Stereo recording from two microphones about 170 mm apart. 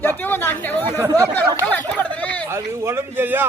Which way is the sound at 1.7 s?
10° left (ahead or behind).